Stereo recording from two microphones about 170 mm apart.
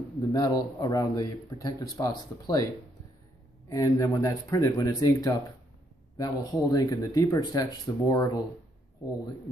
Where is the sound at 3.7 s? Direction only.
20° left (ahead or behind).